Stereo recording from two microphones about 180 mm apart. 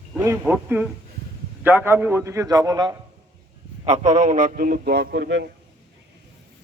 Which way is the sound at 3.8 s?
40° right (ahead or behind).